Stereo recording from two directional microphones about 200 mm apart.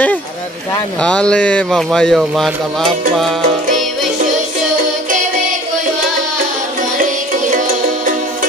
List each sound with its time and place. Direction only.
1.0 s speech: 5° left (ahead or behind)
7.0 s music: 40° right (ahead or behind)